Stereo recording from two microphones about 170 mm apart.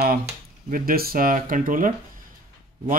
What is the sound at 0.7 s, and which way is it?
Speech, 55° right (ahead or behind).